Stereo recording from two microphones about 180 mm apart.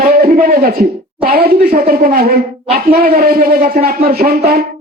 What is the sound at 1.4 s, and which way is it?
Speech, 55° right (ahead or behind).